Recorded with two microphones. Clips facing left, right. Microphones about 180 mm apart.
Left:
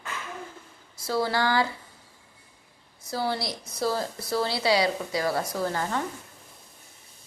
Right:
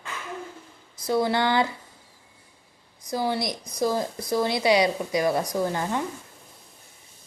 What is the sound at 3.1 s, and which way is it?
Speech, 15° right (ahead or behind).